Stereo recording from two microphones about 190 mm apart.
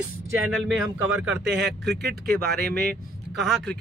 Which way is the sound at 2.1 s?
5° left (ahead or behind).